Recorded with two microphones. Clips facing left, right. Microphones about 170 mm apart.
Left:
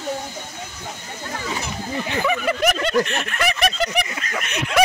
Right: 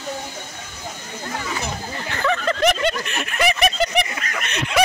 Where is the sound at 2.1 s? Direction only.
10° left (ahead or behind).